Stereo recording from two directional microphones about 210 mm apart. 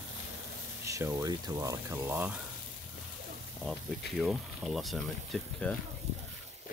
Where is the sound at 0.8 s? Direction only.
15° right (ahead or behind).